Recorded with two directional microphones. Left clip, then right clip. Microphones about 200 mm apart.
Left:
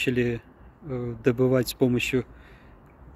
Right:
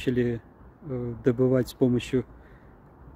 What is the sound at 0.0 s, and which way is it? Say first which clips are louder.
Speech: left 2 dB; centre (ahead or behind).